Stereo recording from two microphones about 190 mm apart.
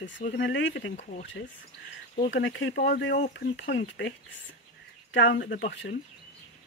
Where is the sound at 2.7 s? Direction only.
55° left (ahead or behind).